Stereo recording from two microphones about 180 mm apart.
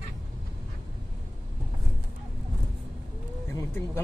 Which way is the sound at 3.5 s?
15° left (ahead or behind).